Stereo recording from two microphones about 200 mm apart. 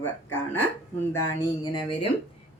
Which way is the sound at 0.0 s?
10° left (ahead or behind).